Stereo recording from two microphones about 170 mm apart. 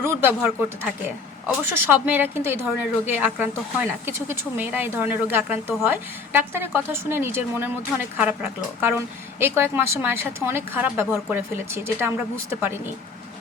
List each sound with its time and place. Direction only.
0.0 s speech: 15° right (ahead or behind)